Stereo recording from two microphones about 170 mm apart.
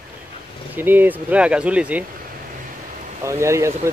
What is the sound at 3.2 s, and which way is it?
Speech, 15° right (ahead or behind).